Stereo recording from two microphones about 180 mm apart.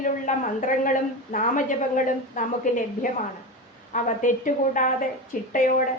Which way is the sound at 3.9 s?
45° left (ahead or behind).